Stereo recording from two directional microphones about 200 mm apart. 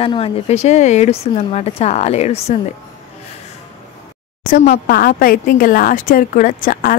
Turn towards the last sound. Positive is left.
turn(degrees=45)  # may be behind; listen again after turning